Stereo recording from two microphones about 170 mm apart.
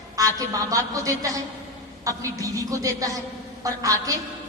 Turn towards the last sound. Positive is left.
turn(degrees=-20)  # may be behind; listen again after turning